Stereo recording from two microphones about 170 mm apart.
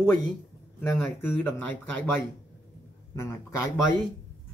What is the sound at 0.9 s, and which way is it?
Speech, 10° left (ahead or behind).